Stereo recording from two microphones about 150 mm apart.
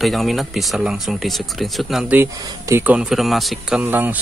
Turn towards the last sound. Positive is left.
turn(degrees=-10)  # may be behind; listen again after turning